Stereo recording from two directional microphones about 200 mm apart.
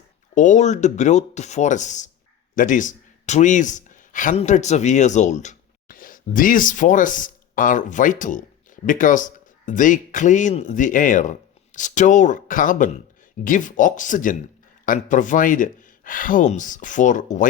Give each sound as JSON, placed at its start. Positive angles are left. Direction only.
{"t": 0.3, "sound": "speech", "side_deg": 40}